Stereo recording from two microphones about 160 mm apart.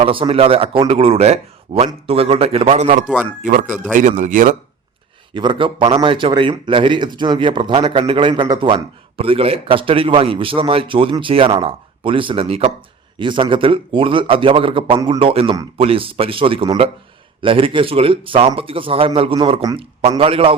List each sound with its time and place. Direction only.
0.0 s a man's voice: 35° right (ahead or behind); by 4.5 s 55° right (ahead or behind)
5.3 s a man's voice: 30° right (ahead or behind)